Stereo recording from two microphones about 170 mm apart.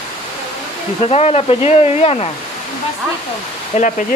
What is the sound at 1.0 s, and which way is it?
Speech, 40° left (ahead or behind).